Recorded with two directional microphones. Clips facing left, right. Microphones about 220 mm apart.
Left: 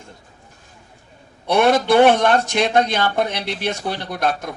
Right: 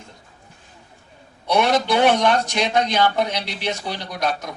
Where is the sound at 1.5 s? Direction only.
55° left (ahead or behind).